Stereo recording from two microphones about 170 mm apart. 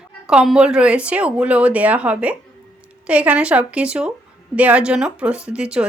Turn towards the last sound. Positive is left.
turn(degrees=-5)  # may be behind; listen again after turning